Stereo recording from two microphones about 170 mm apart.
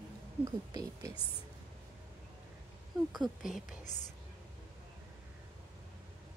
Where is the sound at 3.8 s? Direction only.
45° left (ahead or behind).